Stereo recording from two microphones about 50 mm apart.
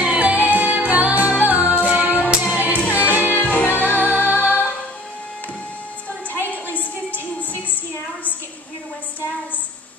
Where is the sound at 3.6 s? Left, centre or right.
Left.